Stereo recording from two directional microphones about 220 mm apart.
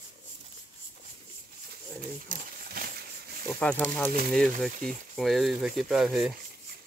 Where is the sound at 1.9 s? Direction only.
40° right (ahead or behind).